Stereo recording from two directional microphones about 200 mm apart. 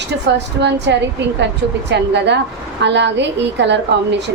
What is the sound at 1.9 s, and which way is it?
A woman's voice, 60° right (ahead or behind).